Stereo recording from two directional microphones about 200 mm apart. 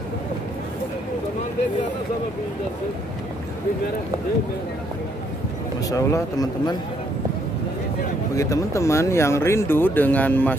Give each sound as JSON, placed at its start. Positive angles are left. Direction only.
{"t": 5.9, "sound": "speech", "side_deg": 15}
{"t": 8.4, "sound": "speech", "side_deg": 15}